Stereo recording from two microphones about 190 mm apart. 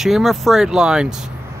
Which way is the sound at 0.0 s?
Centre (ahead or behind).